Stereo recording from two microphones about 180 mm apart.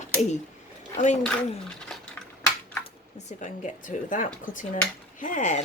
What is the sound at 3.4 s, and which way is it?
A woman's voice, 45° left (ahead or behind).